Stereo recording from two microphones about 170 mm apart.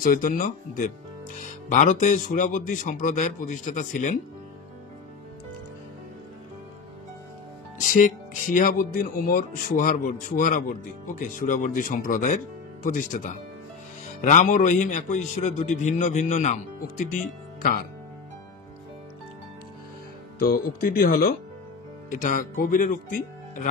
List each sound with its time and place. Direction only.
0.0 s a man's voice: 55° left (ahead or behind)
7.8 s a man's voice: 50° left (ahead or behind)
20.3 s speech: 60° left (ahead or behind)
22.1 s a man's voice: 50° left (ahead or behind)